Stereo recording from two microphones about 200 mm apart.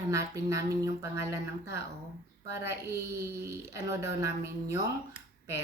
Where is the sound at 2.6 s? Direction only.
15° right (ahead or behind).